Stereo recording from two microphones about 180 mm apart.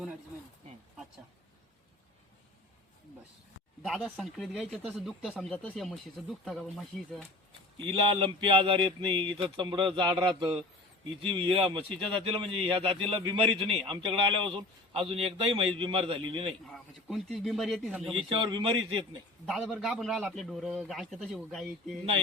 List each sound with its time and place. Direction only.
3.8 s a man's voice: centre (ahead or behind)
8.0 s speech: 30° right (ahead or behind)
16.6 s a man's voice: centre (ahead or behind)
18.3 s speech: 25° right (ahead or behind)
19.5 s a man's voice: centre (ahead or behind)